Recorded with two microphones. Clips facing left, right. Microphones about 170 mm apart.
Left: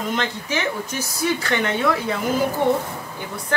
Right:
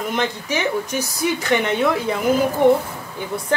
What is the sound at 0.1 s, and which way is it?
A woman's voice, 15° right (ahead or behind).